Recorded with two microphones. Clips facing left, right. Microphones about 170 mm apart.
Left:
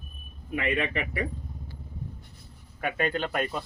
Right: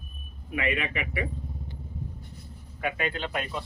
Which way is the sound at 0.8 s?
35° left (ahead or behind).